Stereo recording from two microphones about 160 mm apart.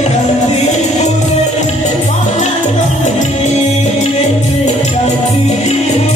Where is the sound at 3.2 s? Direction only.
45° left (ahead or behind).